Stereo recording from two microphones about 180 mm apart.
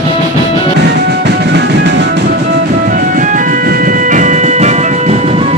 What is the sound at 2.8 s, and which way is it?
Music, 50° right (ahead or behind).